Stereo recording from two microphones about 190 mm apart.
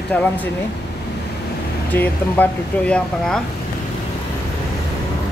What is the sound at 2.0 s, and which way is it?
Speech, 10° left (ahead or behind).